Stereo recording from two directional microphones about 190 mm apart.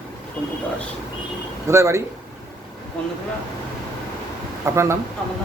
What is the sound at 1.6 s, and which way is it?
Speech, 15° right (ahead or behind).